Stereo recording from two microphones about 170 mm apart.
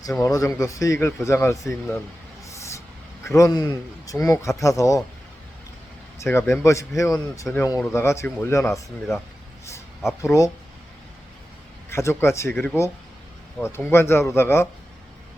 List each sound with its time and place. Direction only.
0.2 s speech: 20° left (ahead or behind)
3.2 s speech: 20° left (ahead or behind)
6.1 s speech: 15° left (ahead or behind)
10.2 s speech: 20° left (ahead or behind)
11.9 s speech: 15° left (ahead or behind)